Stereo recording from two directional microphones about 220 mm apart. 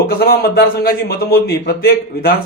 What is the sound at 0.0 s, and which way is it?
A man's voice, 45° left (ahead or behind).